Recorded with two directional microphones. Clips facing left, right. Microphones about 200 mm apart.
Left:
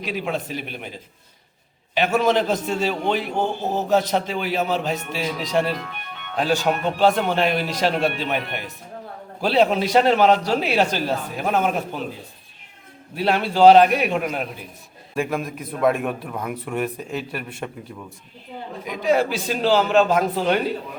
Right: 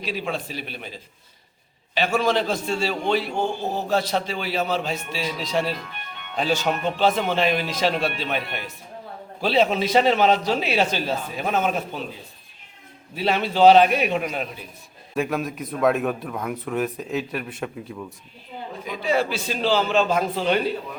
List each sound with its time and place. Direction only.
0.3 s a man's voice: 15° left (ahead or behind)
2.0 s a man's voice: 20° left (ahead or behind)
13.1 s a man's voice: 10° left (ahead or behind)
18.9 s a man's voice: 15° left (ahead or behind)